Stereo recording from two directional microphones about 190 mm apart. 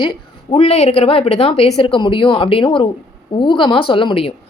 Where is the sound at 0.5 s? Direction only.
30° left (ahead or behind).